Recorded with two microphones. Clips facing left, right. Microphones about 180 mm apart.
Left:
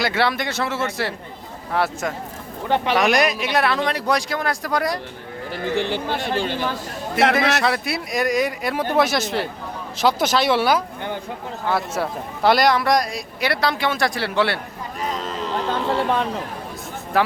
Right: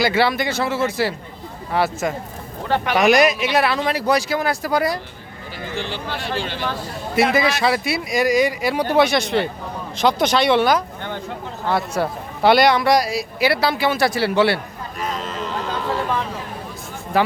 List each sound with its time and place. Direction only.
0.0 s speech: centre (ahead or behind)
2.6 s speech: 20° left (ahead or behind)
2.9 s speech: centre (ahead or behind)
5.7 s speech: 55° left (ahead or behind)
7.2 s speech: centre (ahead or behind)
15.2 s a sound: 30° left (ahead or behind)
17.1 s speech: centre (ahead or behind)